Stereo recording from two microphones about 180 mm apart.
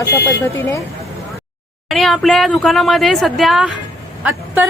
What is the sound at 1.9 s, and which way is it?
Speech, centre (ahead or behind).